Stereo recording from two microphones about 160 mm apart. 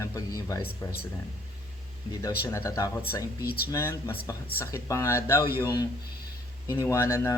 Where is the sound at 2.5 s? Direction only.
20° left (ahead or behind).